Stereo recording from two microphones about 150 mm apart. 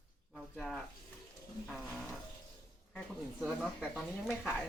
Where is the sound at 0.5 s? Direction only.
Centre (ahead or behind).